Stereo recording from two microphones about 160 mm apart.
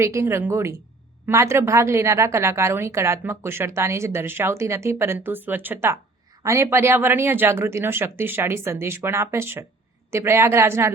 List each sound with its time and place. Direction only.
0.0 s speech: 15° right (ahead or behind)